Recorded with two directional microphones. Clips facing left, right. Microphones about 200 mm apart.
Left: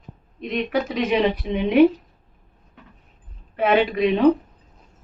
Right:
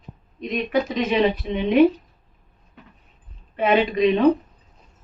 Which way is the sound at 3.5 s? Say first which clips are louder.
Even; 5° left (ahead or behind).